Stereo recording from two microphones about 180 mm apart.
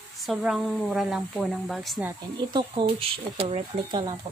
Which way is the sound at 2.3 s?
25° right (ahead or behind).